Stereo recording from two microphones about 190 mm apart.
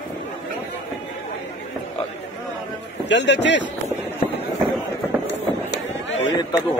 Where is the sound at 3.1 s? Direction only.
70° left (ahead or behind).